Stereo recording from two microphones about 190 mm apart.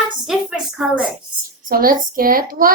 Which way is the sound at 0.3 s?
5° right (ahead or behind).